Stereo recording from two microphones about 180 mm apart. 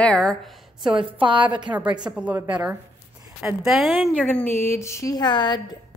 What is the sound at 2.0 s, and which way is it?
A woman's voice, 5° right (ahead or behind).